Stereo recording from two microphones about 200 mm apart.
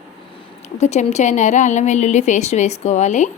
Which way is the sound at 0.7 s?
35° left (ahead or behind).